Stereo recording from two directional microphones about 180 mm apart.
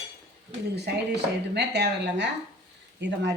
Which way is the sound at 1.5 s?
70° right (ahead or behind).